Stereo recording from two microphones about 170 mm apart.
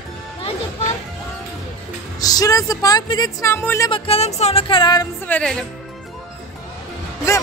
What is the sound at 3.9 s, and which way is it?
Speech, 35° left (ahead or behind).